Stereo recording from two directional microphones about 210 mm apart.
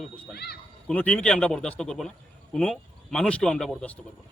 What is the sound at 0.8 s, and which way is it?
Speech, 5° left (ahead or behind).